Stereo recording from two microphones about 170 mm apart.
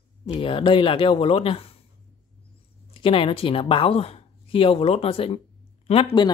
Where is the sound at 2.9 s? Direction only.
30° left (ahead or behind).